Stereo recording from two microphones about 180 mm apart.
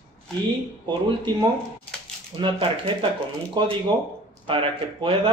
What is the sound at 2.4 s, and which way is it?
Speech, 30° right (ahead or behind).